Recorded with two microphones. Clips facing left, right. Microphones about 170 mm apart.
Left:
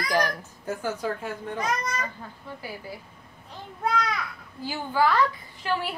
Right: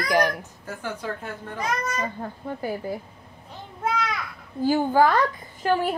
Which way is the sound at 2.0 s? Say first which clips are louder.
Right 6 dB; 50° right (ahead or behind).